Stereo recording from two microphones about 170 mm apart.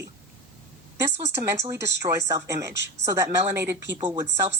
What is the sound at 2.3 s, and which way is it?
Speech, 20° right (ahead or behind).